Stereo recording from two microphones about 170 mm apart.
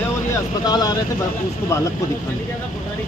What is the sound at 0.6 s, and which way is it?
Speech, 25° left (ahead or behind).